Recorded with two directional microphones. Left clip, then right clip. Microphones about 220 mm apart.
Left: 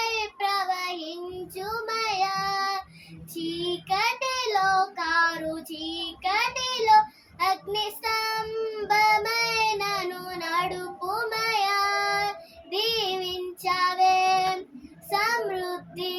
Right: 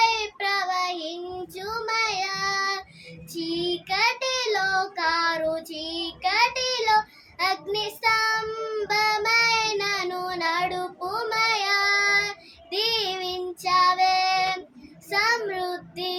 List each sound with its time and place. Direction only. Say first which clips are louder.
0.0 s child singing: right 5 dB; 20° right (ahead or behind)